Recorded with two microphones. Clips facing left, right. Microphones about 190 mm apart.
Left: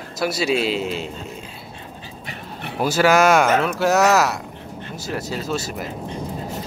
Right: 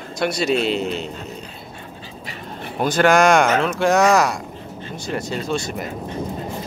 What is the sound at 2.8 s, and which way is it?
Speech, 5° left (ahead or behind).